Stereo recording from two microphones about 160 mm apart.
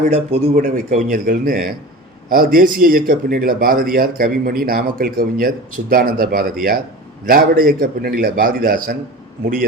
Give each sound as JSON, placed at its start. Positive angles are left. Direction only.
{"t": 0.0, "sound": "speech", "side_deg": -40}
{"t": 0.5, "sound": "speech", "side_deg": -50}